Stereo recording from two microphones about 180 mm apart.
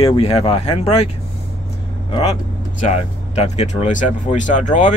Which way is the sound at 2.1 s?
35° left (ahead or behind).